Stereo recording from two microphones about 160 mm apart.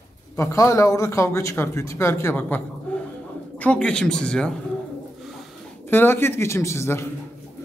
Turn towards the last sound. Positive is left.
turn(degrees=15)  # may be behind; listen again after turning